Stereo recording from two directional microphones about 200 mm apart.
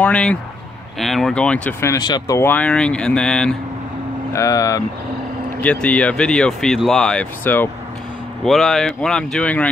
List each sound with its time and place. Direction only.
0.0 s speech: 5° left (ahead or behind)
4.3 s speech: 15° left (ahead or behind)
5.6 s speech: 5° left (ahead or behind)